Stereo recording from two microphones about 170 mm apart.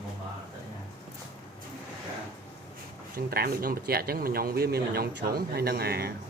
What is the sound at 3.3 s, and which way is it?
Speech, 65° right (ahead or behind).